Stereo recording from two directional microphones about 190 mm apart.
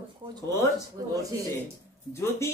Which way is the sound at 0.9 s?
15° right (ahead or behind).